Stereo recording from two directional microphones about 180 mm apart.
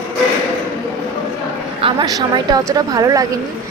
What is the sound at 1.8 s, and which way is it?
A woman's voice, 25° right (ahead or behind).